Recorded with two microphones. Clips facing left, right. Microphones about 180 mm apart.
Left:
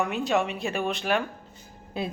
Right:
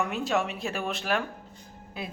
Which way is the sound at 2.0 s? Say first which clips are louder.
Left 6 dB; 30° left (ahead or behind).